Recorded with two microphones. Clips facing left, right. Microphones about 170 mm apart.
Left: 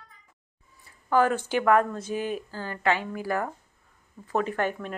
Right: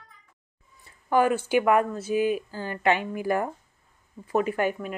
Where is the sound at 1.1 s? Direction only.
15° right (ahead or behind).